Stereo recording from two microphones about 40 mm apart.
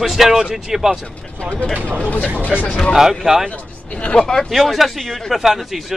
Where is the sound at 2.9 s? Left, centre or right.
Centre.